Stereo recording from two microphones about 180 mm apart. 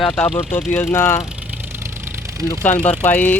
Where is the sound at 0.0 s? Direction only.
Centre (ahead or behind).